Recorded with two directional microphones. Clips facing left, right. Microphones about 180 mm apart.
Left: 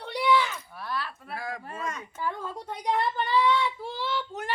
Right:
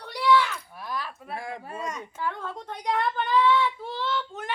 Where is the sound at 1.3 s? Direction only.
25° right (ahead or behind).